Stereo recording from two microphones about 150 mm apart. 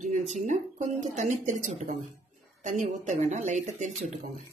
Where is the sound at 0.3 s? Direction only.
55° right (ahead or behind).